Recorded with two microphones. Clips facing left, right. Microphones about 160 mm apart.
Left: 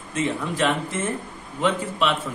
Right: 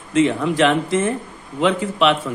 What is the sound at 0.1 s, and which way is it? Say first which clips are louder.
A man's voice: right 9 dB; 90° right.